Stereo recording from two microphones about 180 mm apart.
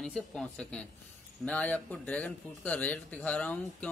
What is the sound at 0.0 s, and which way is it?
Speech, 5° left (ahead or behind).